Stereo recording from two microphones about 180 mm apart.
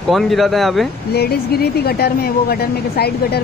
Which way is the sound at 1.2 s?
60° left (ahead or behind).